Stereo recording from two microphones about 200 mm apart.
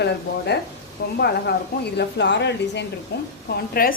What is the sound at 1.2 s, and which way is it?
Speech, 55° left (ahead or behind).